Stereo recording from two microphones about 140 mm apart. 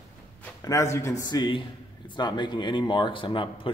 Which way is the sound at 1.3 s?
30° left (ahead or behind).